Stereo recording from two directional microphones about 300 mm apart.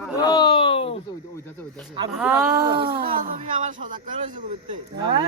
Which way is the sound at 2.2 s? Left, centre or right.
Centre.